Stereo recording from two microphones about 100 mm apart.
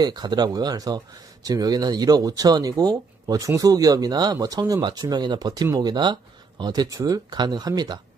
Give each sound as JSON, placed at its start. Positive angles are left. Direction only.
{"t": 0.0, "sound": "speech", "side_deg": -45}